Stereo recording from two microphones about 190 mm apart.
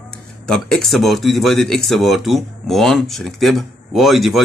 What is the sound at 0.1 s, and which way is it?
Speech, centre (ahead or behind).